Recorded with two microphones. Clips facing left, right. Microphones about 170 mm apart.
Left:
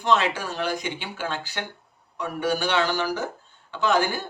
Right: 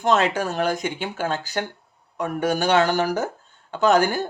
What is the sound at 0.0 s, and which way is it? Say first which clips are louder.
Speech: right 3 dB; 45° right (ahead or behind).